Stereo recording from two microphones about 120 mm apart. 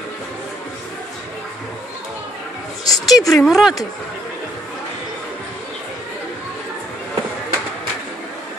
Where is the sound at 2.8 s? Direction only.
30° left (ahead or behind).